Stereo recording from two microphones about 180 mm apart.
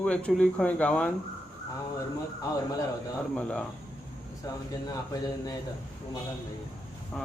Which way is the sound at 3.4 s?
5° left (ahead or behind).